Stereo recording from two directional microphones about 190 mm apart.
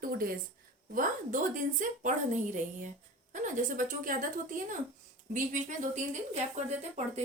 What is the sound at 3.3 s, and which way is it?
A woman's voice, 40° right (ahead or behind).